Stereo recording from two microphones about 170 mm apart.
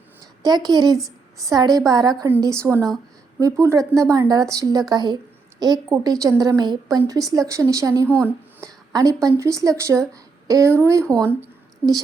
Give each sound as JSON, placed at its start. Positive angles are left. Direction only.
{"t": 0.4, "sound": "a woman's voice", "side_deg": -20}
{"t": 8.0, "sound": "speech", "side_deg": 10}
{"t": 8.6, "sound": "a sound", "side_deg": -20}
{"t": 9.3, "sound": "a woman's voice", "side_deg": -20}
{"t": 11.0, "sound": "speech", "side_deg": 5}